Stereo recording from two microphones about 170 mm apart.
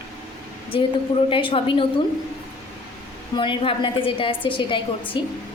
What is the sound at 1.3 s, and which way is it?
Speech, 30° left (ahead or behind).